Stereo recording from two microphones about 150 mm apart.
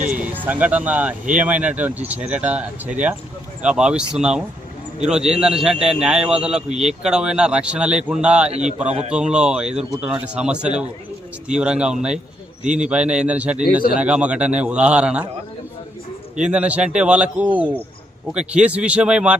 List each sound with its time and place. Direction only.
0.4 s a man's voice: 10° right (ahead or behind)
8.4 s speech: 45° right (ahead or behind)
9.1 s a man's voice: 5° right (ahead or behind)
16.4 s speech: 10° right (ahead or behind)